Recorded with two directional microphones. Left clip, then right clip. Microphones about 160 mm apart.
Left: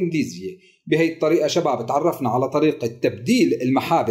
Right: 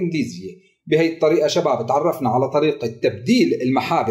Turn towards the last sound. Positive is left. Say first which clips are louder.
# even
turn(degrees=20)  # may be behind; listen again after turning